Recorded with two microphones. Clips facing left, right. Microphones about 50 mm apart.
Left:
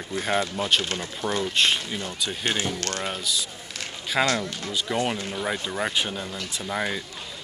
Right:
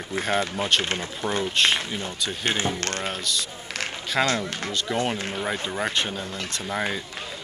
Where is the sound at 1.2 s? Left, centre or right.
Centre.